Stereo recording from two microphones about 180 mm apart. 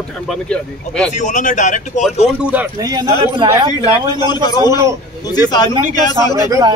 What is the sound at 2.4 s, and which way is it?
Speech, 10° right (ahead or behind).